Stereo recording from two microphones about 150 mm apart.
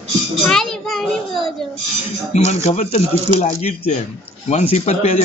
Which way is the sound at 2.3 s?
50° left (ahead or behind).